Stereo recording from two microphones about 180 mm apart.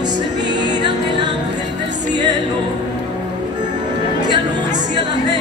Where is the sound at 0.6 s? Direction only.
25° right (ahead or behind).